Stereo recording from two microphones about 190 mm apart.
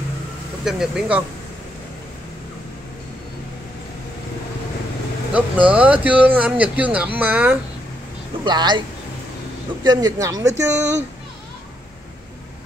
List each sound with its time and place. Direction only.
0.7 s speech: centre (ahead or behind)
5.3 s speech: 5° right (ahead or behind)
8.5 s speech: 25° right (ahead or behind)
9.8 s speech: 20° right (ahead or behind)